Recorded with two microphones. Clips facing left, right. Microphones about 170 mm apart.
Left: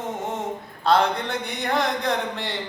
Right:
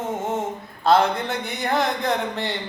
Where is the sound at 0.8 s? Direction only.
5° right (ahead or behind).